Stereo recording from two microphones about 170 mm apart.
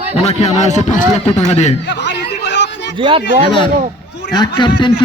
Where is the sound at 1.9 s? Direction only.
90° left.